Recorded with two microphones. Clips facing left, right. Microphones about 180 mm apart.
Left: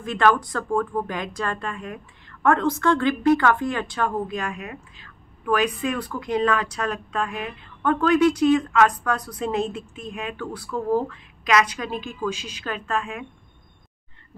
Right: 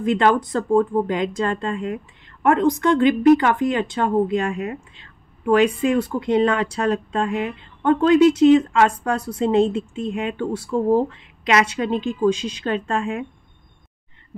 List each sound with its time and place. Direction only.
0.0 s a woman's voice: 20° right (ahead or behind)